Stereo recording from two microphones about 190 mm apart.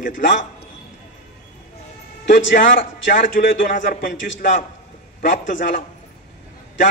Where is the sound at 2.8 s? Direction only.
45° left (ahead or behind).